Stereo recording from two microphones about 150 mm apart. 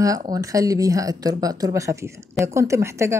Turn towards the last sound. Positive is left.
turn(degrees=-20)  # may be behind; listen again after turning